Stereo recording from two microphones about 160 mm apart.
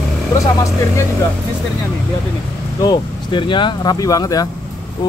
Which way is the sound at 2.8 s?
30° left (ahead or behind).